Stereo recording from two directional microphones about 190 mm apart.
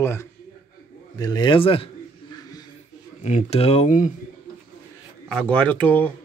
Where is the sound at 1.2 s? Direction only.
20° left (ahead or behind).